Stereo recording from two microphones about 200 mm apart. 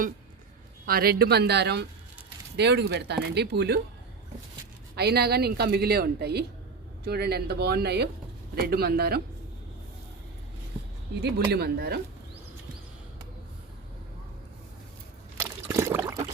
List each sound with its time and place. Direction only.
0.9 s a woman's voice: 50° right (ahead or behind)
4.9 s a woman's voice: 55° right (ahead or behind)
11.2 s a woman's voice: 55° right (ahead or behind)
15.4 s trickle: 15° right (ahead or behind)